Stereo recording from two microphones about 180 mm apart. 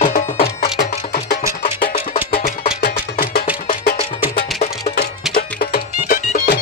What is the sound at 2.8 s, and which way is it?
Music, 55° left (ahead or behind).